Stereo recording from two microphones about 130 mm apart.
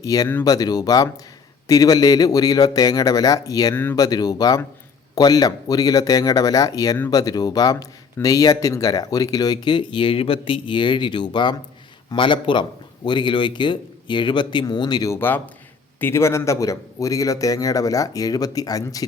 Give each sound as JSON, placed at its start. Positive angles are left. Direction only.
{"t": 0.0, "sound": "a man's voice", "side_deg": 30}
{"t": 15.1, "sound": "a man's voice", "side_deg": 15}